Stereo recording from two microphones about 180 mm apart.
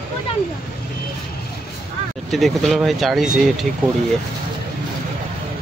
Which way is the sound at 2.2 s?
Centre (ahead or behind).